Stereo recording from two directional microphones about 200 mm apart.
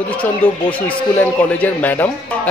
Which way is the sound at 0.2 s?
5° left (ahead or behind).